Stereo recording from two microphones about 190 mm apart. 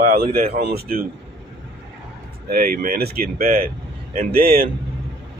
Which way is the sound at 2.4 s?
50° right (ahead or behind).